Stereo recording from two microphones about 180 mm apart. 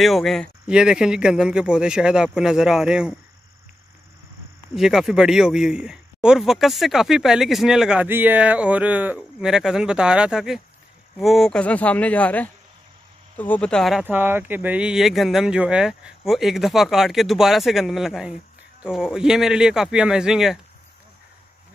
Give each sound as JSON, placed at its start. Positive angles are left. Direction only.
{"t": 0.0, "sound": "speech", "side_deg": 0}
{"t": 4.7, "sound": "speech", "side_deg": 0}
{"t": 14.0, "sound": "speech", "side_deg": -10}